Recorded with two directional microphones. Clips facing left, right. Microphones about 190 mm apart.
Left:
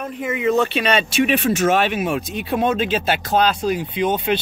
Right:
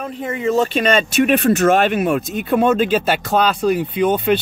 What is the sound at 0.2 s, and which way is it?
Speech, 40° right (ahead or behind).